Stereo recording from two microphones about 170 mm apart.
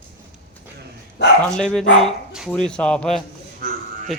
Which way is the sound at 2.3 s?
5° right (ahead or behind).